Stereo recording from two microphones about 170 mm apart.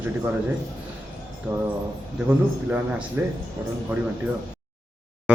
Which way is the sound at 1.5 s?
15° right (ahead or behind).